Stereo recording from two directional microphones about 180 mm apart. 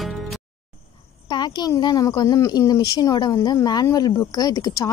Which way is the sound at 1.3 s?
25° left (ahead or behind).